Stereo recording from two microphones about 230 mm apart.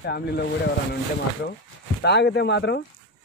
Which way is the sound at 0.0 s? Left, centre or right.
Left.